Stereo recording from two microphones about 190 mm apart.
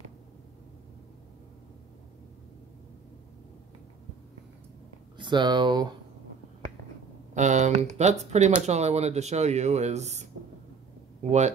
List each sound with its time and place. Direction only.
5.1 s speech: 25° right (ahead or behind)
7.3 s speech: 40° right (ahead or behind)
11.2 s speech: 35° right (ahead or behind)